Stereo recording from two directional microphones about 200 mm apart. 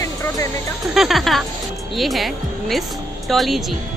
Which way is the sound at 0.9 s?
Centre (ahead or behind).